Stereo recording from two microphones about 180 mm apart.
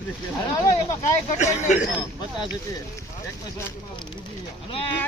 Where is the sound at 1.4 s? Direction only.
40° left (ahead or behind).